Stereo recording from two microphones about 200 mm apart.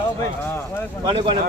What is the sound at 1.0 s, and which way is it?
Speech, 25° right (ahead or behind).